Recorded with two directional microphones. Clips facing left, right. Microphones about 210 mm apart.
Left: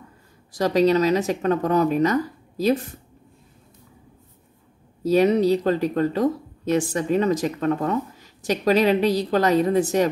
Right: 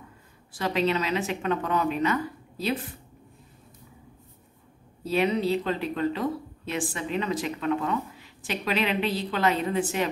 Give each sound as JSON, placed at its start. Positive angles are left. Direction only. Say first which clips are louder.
{"t": 0.5, "sound": "speech", "louder": "left 8 dB", "side_deg": 40}
{"t": 5.0, "sound": "speech", "louder": "left 7 dB", "side_deg": 40}